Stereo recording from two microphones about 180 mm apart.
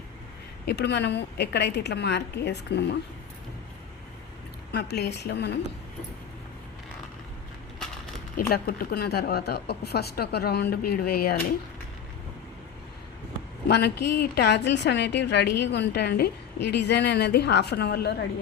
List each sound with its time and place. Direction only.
0.6 s a woman's voice: 65° left (ahead or behind)
4.7 s a woman's voice: 65° left (ahead or behind)
8.4 s a woman's voice: 55° left (ahead or behind)
13.7 s a woman's voice: 65° left (ahead or behind)